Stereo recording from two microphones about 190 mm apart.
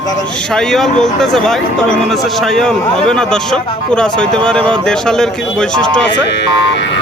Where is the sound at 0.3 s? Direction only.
5° left (ahead or behind).